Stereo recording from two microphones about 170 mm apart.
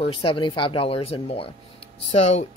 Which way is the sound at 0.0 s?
30° left (ahead or behind).